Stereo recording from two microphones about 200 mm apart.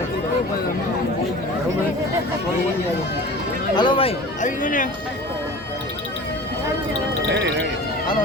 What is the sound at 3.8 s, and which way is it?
Speech, 25° left (ahead or behind).